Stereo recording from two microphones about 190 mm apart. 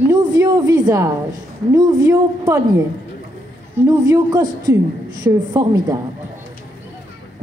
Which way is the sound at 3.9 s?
20° right (ahead or behind).